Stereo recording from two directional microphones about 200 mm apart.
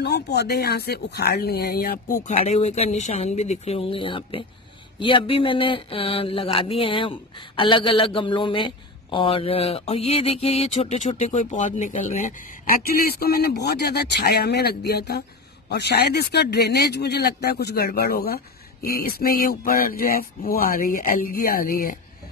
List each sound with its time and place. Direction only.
0.0 s a man's voice: 55° left (ahead or behind)